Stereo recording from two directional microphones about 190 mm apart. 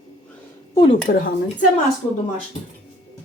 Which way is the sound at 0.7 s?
25° left (ahead or behind).